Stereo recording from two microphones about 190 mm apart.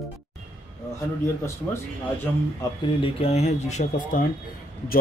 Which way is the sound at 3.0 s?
30° left (ahead or behind).